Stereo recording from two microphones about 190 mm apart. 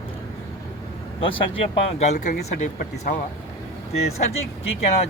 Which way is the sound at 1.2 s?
30° left (ahead or behind).